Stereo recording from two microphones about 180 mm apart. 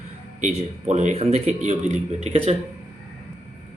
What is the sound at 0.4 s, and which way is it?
Speech, 40° right (ahead or behind).